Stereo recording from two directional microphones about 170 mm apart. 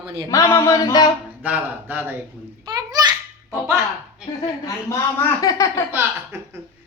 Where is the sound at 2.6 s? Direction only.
25° right (ahead or behind).